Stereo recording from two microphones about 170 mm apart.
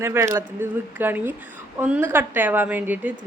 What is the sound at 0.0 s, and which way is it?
Speech, 15° right (ahead or behind).